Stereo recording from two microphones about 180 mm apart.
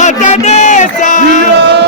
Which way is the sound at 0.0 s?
40° left (ahead or behind).